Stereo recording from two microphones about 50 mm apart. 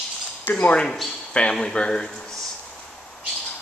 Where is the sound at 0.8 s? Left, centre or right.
Centre.